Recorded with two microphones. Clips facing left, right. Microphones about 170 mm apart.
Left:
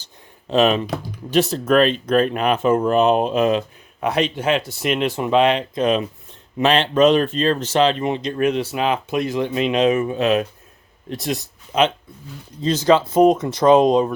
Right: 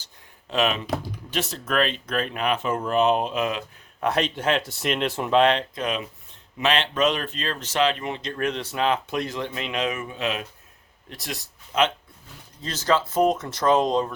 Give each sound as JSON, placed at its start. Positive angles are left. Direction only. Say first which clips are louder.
{"t": 0.5, "sound": "speech", "louder": "left 7 dB", "side_deg": 35}
{"t": 4.0, "sound": "speech", "louder": "left 4 dB", "side_deg": 0}
{"t": 5.7, "sound": "speech", "louder": "left 9 dB", "side_deg": 25}
{"t": 11.1, "sound": "speech", "louder": "left 10 dB", "side_deg": 20}